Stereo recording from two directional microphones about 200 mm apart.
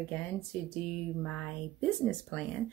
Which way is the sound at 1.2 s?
5° left (ahead or behind).